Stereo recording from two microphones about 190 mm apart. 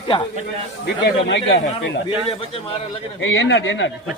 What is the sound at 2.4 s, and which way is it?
Speech, 30° left (ahead or behind).